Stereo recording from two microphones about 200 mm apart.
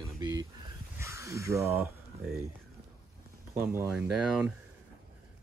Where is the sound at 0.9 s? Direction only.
15° right (ahead or behind).